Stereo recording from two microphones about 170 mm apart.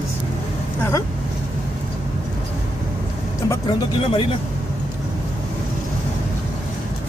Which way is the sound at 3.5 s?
25° left (ahead or behind).